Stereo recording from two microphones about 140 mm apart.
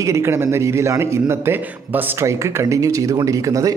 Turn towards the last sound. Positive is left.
turn(degrees=-25)  # may be behind; listen again after turning